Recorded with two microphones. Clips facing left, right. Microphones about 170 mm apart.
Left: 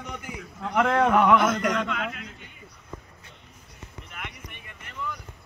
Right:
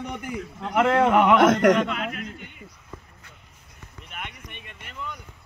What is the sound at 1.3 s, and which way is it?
Speech, 85° right.